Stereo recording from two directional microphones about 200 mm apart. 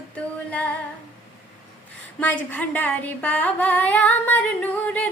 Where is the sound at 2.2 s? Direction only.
10° left (ahead or behind).